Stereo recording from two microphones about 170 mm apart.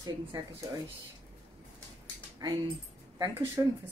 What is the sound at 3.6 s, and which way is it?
Speech, 20° right (ahead or behind).